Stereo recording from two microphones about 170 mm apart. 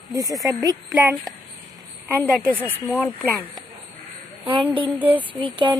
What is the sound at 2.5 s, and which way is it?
Speech, 10° left (ahead or behind).